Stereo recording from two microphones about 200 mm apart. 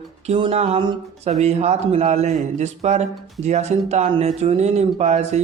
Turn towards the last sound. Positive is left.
turn(degrees=-35)  # may be behind; listen again after turning